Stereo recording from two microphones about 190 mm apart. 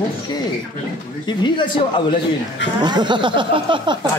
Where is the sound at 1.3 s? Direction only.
25° left (ahead or behind).